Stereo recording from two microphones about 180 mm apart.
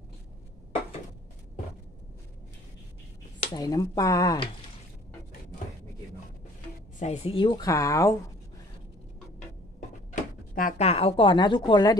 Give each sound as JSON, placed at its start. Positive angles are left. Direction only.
{"t": 3.3, "sound": "speech", "side_deg": 20}
{"t": 7.0, "sound": "speech", "side_deg": 35}
{"t": 10.5, "sound": "a woman's voice", "side_deg": 50}
{"t": 10.9, "sound": "speech", "side_deg": 35}